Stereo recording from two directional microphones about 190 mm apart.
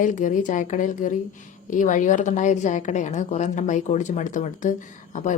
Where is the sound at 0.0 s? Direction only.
40° left (ahead or behind).